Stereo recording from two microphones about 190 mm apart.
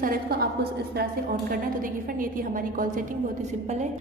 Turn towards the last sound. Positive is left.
turn(degrees=-45)  # may be behind; listen again after turning